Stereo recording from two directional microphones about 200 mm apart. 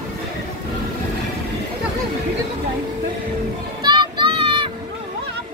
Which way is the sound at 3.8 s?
20° right (ahead or behind).